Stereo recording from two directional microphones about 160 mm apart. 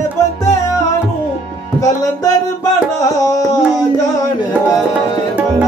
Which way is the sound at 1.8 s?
20° left (ahead or behind).